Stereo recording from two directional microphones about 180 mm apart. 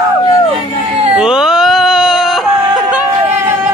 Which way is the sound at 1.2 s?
5° right (ahead or behind).